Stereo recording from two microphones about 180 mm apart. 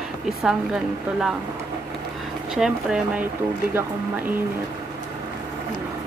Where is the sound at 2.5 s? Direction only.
5° right (ahead or behind).